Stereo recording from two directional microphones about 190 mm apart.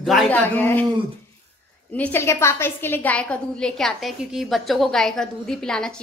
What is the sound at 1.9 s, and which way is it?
A woman's voice, 10° left (ahead or behind).